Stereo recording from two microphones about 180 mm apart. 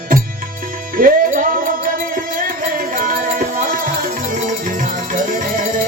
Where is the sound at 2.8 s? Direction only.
50° right (ahead or behind).